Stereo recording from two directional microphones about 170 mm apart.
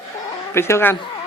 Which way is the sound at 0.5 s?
15° left (ahead or behind).